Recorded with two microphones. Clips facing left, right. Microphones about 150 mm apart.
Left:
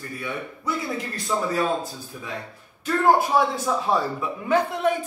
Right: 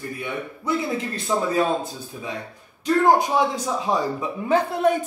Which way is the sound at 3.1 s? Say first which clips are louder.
Even; 15° right (ahead or behind).